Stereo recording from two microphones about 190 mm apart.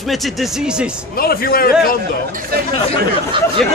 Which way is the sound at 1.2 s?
50° left (ahead or behind).